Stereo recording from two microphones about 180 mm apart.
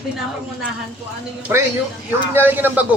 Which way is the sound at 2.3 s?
10° right (ahead or behind).